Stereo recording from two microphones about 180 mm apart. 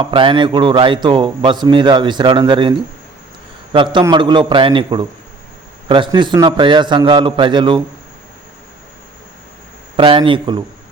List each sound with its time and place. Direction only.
0.0 s a man's voice: 30° right (ahead or behind)
10.0 s a man's voice: 30° right (ahead or behind)